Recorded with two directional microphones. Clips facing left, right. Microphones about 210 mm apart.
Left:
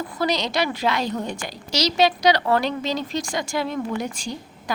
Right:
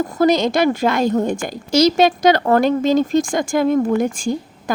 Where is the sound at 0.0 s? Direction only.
45° right (ahead or behind).